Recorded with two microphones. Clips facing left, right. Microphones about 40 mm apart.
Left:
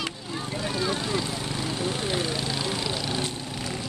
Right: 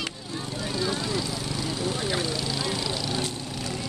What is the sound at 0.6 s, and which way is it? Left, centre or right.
Vehicle, left.